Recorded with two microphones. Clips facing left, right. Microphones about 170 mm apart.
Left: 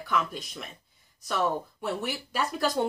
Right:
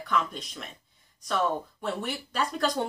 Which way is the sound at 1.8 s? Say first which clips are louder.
Even; 5° left (ahead or behind).